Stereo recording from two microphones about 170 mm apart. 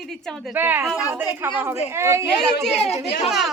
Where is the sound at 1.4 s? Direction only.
15° right (ahead or behind).